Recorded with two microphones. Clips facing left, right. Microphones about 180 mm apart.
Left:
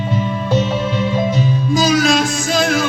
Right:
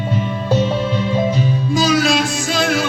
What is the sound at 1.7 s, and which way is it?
Music, 45° left (ahead or behind).